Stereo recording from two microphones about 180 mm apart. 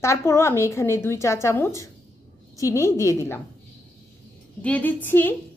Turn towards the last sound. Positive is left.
turn(degrees=10)  # may be behind; listen again after turning